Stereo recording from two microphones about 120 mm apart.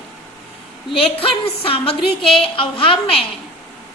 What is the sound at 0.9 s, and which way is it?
A woman's voice, 50° left (ahead or behind).